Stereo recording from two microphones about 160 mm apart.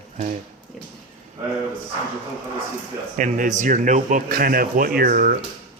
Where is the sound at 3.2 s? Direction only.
50° right (ahead or behind).